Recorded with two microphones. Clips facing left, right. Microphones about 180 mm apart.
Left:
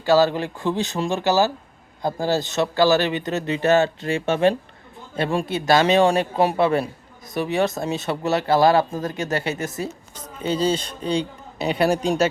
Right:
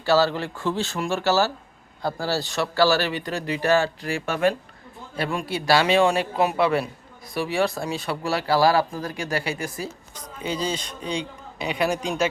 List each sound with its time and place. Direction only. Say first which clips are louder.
0.0 s a man's voice: left 3 dB; 15° left (ahead or behind); by 12.3 s 35° left (ahead or behind)